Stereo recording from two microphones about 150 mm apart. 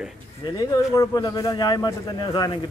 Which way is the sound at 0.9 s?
25° left (ahead or behind).